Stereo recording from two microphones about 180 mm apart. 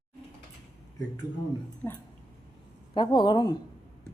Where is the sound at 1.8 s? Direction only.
15° left (ahead or behind).